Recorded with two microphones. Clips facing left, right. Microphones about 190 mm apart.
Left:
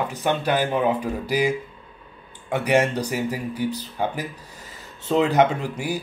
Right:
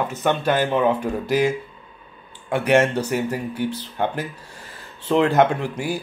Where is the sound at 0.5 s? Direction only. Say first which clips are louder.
Right 2 dB; 5° left (ahead or behind).